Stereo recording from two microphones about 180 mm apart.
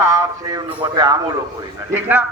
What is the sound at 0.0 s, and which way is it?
A man's voice, 15° right (ahead or behind).